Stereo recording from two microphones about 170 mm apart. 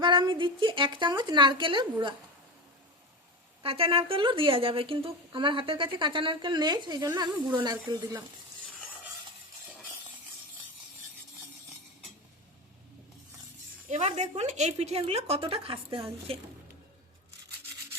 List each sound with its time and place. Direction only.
0.0 s speech: 30° right (ahead or behind)
3.6 s speech: 35° right (ahead or behind)
13.8 s speech: 45° right (ahead or behind)